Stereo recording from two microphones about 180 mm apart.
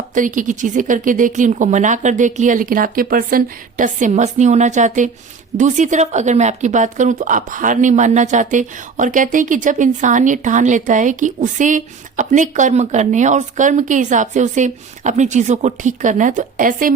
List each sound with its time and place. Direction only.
0.1 s speech: 45° right (ahead or behind)